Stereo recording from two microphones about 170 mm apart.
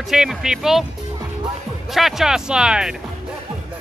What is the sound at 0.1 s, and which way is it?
Speech, 5° right (ahead or behind).